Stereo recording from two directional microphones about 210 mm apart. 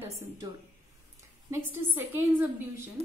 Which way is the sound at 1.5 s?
10° right (ahead or behind).